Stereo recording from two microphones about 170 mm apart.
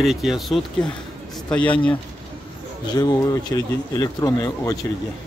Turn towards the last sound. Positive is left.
turn(degrees=20)  # may be behind; listen again after turning